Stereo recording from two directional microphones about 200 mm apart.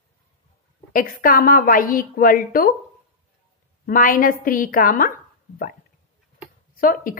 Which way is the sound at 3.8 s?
45° left (ahead or behind).